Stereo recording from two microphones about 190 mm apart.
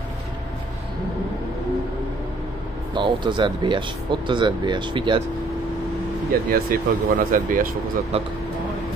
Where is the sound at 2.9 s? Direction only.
25° right (ahead or behind).